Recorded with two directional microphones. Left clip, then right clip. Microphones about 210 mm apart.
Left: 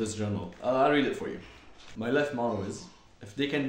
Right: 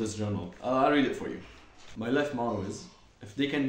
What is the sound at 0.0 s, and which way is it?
Speech, 5° left (ahead or behind).